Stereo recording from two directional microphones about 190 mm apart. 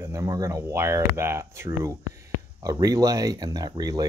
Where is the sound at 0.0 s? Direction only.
15° right (ahead or behind).